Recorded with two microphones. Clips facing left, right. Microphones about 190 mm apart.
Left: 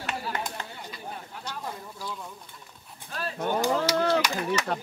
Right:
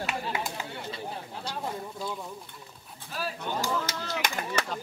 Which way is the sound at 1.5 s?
25° right (ahead or behind).